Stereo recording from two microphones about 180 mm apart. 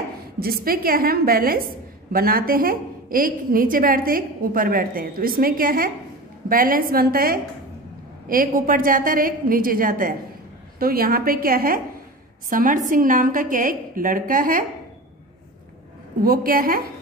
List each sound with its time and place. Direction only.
0.4 s a woman's voice: 55° right (ahead or behind)
16.2 s a woman's voice: 55° right (ahead or behind)